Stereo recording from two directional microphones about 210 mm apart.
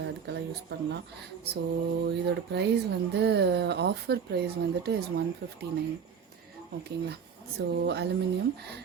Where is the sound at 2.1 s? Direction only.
55° right (ahead or behind).